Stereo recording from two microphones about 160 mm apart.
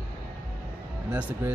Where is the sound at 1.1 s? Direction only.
10° right (ahead or behind).